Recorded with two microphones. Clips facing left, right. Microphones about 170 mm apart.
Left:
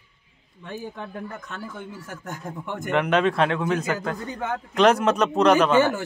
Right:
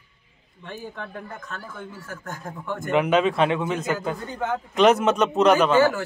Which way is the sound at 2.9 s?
5° right (ahead or behind).